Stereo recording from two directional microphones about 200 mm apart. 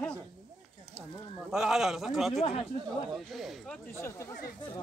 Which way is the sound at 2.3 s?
35° left (ahead or behind).